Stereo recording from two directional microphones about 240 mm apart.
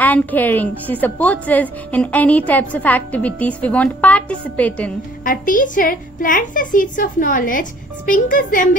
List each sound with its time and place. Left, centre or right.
0.0 s a woman's voice: centre
5.2 s a woman's voice: left